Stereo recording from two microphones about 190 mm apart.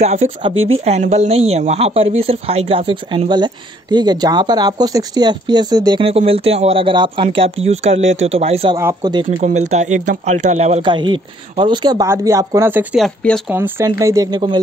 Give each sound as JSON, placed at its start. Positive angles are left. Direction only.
{"t": 0.0, "sound": "speech", "side_deg": -35}
{"t": 8.7, "sound": "speech", "side_deg": -20}
{"t": 9.4, "sound": "speech", "side_deg": -35}
{"t": 10.8, "sound": "speech", "side_deg": -25}
{"t": 13.0, "sound": "speech", "side_deg": 5}
{"t": 13.5, "sound": "speech", "side_deg": -15}